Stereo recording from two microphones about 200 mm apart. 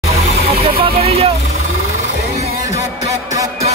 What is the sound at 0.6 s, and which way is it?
Vehicle, 30° right (ahead or behind).